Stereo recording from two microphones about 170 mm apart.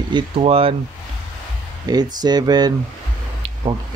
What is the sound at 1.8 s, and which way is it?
Speech, 25° right (ahead or behind).